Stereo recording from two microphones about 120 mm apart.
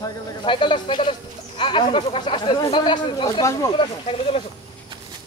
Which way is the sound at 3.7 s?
50° left (ahead or behind).